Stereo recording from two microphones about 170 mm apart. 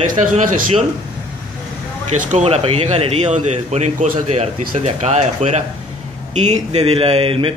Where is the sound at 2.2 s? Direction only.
45° right (ahead or behind).